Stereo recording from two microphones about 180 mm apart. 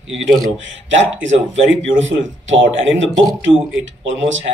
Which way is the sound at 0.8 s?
90° right.